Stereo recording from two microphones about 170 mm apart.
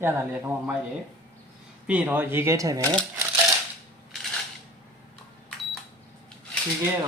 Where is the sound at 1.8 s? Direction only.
10° right (ahead or behind).